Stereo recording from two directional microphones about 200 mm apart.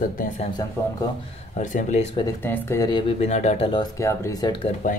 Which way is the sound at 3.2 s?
35° left (ahead or behind).